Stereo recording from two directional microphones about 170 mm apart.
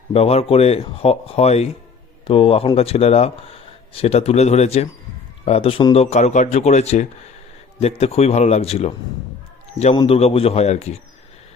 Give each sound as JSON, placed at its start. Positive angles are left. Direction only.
{"t": 0.1, "sound": "speech", "side_deg": 35}
{"t": 9.9, "sound": "a man's voice", "side_deg": 25}
{"t": 10.2, "sound": "speech", "side_deg": 35}